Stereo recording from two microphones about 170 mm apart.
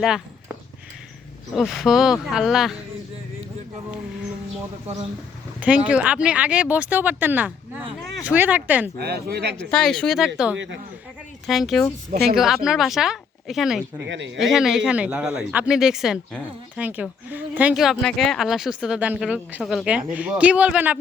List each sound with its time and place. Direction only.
0.0 s a sound: 5° right (ahead or behind)
1.5 s speech: centre (ahead or behind)
5.5 s speech: 10° right (ahead or behind)
9.0 s speech: 70° right (ahead or behind)
9.6 s speech: 5° left (ahead or behind)
12.1 s speech: 65° right (ahead or behind)
12.4 s speech: centre (ahead or behind)
14.0 s speech: 90° right
14.3 s speech: 5° right (ahead or behind)